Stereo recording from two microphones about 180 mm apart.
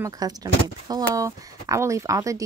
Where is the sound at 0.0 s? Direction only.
20° right (ahead or behind).